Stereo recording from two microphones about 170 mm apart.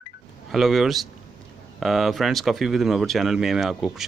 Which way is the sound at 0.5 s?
Centre (ahead or behind).